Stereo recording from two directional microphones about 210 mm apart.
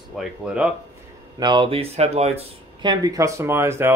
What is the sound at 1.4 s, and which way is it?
Speech, 20° right (ahead or behind).